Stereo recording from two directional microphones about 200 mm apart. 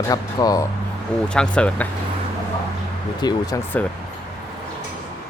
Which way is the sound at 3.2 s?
20° left (ahead or behind).